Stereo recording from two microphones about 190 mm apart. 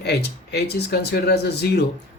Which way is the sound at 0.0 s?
60° left (ahead or behind).